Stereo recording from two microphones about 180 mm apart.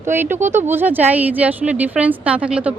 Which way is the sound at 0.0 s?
10° right (ahead or behind).